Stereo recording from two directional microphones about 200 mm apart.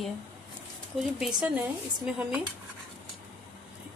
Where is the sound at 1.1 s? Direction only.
Centre (ahead or behind).